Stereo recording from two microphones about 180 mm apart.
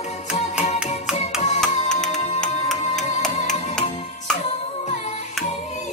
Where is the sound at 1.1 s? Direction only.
5° right (ahead or behind).